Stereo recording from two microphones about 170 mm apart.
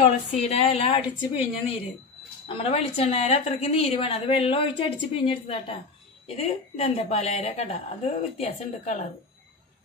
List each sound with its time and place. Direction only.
0.0 s a woman's voice: 40° left (ahead or behind)
2.4 s a woman's voice: 35° left (ahead or behind)